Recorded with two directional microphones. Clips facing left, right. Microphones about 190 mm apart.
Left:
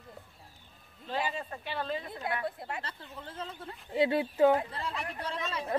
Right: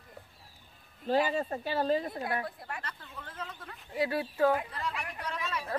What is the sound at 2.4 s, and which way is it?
Speech, 25° left (ahead or behind).